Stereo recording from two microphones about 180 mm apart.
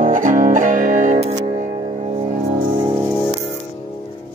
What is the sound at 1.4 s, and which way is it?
Music, 35° right (ahead or behind).